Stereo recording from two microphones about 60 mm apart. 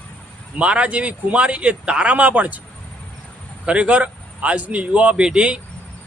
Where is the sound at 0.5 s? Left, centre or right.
Centre.